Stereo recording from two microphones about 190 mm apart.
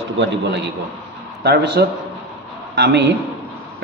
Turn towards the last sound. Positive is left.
turn(degrees=-65)  # may be behind; listen again after turning